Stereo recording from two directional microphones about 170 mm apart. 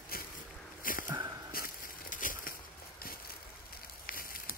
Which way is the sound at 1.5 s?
55° left (ahead or behind).